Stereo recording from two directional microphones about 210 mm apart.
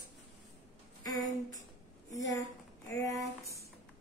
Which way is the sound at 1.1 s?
15° left (ahead or behind).